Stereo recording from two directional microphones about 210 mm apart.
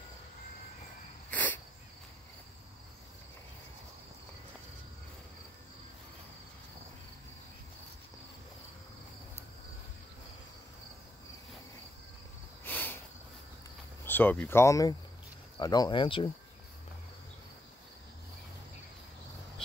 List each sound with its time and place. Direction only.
1.3 s cricket: 10° left (ahead or behind)
12.6 s a sound: 10° left (ahead or behind)
14.0 s speech: 10° left (ahead or behind); by 16.3 s 25° left (ahead or behind)